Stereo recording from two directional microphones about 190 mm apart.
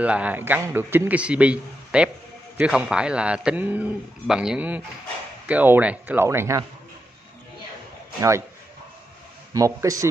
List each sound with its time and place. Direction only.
0.0 s a man's voice: 5° right (ahead or behind)
8.2 s a man's voice: 15° right (ahead or behind)
9.5 s a man's voice: 20° right (ahead or behind)